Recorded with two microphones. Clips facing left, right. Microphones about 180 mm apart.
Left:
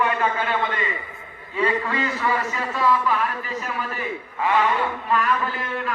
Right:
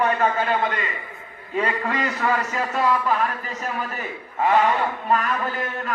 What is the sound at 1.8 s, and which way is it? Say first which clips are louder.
Speech: right 1 dB; 50° right (ahead or behind).